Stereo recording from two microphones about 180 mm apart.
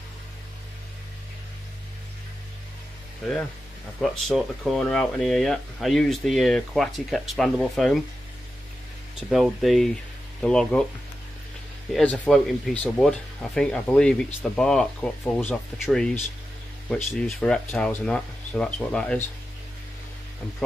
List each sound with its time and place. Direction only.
4.0 s speech: centre (ahead or behind)
9.3 s speech: centre (ahead or behind)
11.9 s speech: 5° left (ahead or behind)